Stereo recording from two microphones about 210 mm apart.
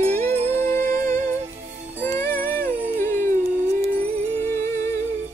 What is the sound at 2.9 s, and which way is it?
Howl, 40° right (ahead or behind).